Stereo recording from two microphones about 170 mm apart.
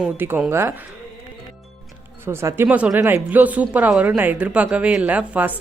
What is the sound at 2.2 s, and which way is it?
Speech, 15° right (ahead or behind).